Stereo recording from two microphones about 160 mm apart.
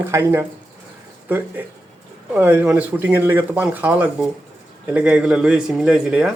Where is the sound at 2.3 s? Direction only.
10° right (ahead or behind).